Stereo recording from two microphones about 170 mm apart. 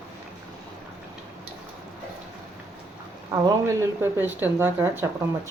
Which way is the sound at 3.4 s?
15° right (ahead or behind).